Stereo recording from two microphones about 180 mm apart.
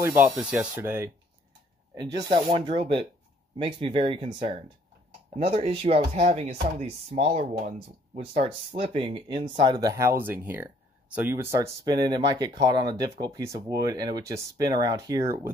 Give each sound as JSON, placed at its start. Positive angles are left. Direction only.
{"t": 0.0, "sound": "speech", "side_deg": -10}